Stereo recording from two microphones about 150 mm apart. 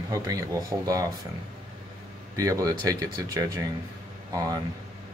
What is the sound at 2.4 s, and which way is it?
Speech, 20° right (ahead or behind).